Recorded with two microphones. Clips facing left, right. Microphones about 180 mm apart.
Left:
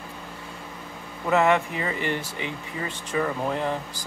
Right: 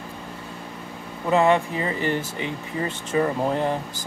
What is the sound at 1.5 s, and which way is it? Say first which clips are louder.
Speech: right 2 dB; 30° right (ahead or behind).